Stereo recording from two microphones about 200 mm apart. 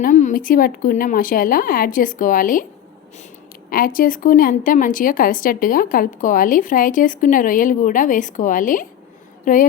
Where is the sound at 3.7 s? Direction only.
45° left (ahead or behind).